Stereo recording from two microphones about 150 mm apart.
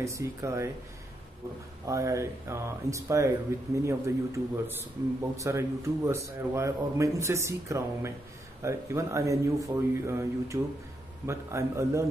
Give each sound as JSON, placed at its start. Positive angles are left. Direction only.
{"t": 0.0, "sound": "speech", "side_deg": -20}
{"t": 1.9, "sound": "speech", "side_deg": -20}